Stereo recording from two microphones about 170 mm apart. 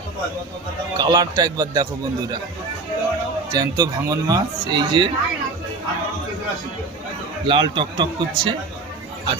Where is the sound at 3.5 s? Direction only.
25° right (ahead or behind).